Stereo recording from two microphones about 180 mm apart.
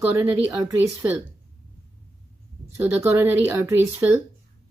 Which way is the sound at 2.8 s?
15° right (ahead or behind).